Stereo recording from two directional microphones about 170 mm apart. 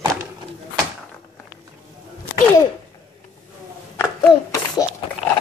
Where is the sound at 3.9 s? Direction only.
15° left (ahead or behind).